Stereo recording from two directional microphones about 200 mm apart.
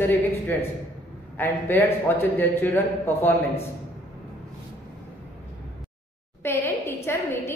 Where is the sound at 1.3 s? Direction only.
10° left (ahead or behind).